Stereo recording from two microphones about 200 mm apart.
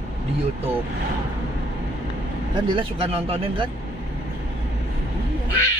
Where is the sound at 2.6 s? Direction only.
25° right (ahead or behind).